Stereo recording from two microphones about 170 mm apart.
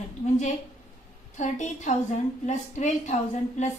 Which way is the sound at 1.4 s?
45° left (ahead or behind).